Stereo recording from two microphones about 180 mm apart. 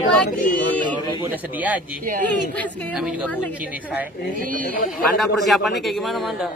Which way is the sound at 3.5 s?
10° right (ahead or behind).